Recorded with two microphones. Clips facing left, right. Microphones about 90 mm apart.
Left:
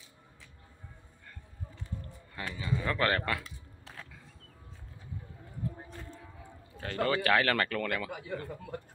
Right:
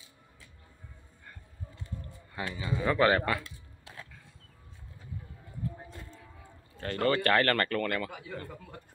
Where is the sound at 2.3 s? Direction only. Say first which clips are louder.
Right 1 dB; 10° right (ahead or behind).